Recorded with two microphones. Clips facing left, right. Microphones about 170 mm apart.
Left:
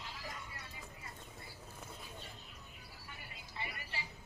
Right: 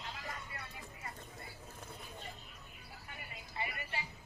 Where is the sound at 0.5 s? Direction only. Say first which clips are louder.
Right 4 dB; 60° right (ahead or behind).